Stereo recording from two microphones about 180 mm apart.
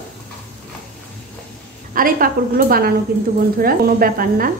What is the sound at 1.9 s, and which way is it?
A woman's voice, 50° right (ahead or behind).